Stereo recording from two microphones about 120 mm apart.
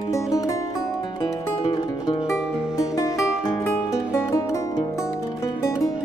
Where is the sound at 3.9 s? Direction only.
25° left (ahead or behind).